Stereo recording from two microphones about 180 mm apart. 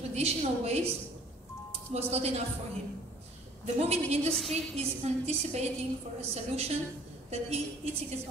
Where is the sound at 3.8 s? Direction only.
35° right (ahead or behind).